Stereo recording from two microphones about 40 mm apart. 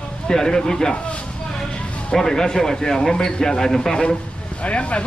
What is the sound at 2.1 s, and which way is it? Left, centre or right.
Speech, centre.